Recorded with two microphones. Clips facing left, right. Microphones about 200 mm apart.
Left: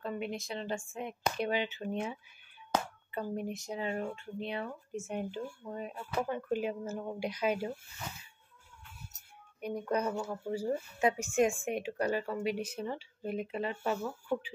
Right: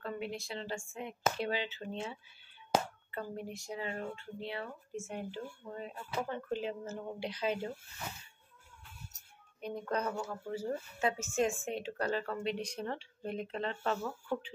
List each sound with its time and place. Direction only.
0.0 s speech: 20° left (ahead or behind)
9.6 s speech: 10° left (ahead or behind)